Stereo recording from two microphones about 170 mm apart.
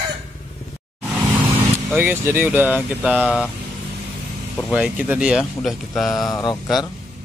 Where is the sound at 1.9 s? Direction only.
10° right (ahead or behind).